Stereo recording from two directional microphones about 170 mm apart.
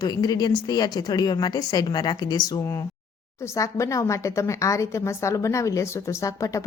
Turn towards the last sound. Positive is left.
turn(degrees=20)  # may be behind; listen again after turning